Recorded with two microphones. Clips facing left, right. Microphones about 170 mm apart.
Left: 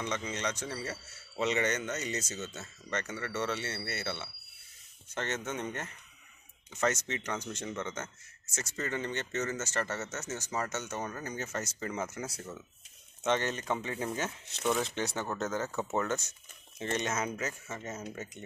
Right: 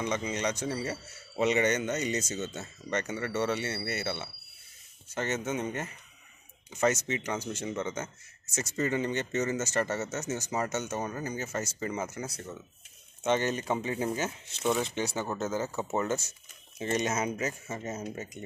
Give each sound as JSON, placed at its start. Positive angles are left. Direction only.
{"t": 0.0, "sound": "speech", "side_deg": -15}